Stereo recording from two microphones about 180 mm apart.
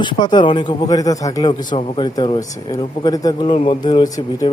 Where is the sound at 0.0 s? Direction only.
25° left (ahead or behind).